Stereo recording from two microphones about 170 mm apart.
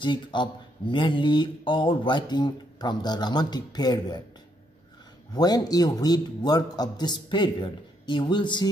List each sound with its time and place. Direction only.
0.0 s speech: 25° left (ahead or behind)
5.3 s speech: 25° left (ahead or behind)